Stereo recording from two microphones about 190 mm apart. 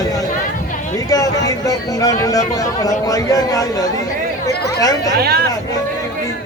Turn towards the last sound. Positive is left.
turn(degrees=-55)  # may be behind; listen again after turning